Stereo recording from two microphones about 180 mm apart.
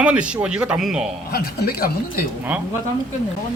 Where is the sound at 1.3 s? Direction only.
60° left (ahead or behind).